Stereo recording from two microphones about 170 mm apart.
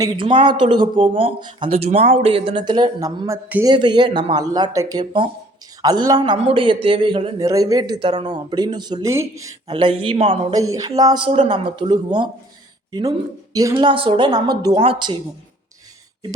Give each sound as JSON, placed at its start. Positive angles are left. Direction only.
{"t": 0.0, "sound": "speech", "side_deg": -30}
{"t": 7.3, "sound": "speech", "side_deg": -20}
{"t": 9.7, "sound": "speech", "side_deg": -30}